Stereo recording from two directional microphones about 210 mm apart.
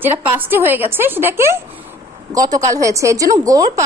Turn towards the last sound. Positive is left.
turn(degrees=-15)  # may be behind; listen again after turning